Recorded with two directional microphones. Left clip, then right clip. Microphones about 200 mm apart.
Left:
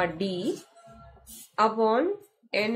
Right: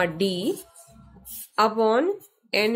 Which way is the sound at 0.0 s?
35° right (ahead or behind).